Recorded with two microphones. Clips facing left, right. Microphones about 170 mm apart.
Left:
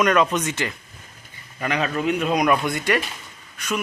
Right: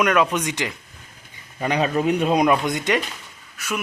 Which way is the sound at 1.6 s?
30° right (ahead or behind).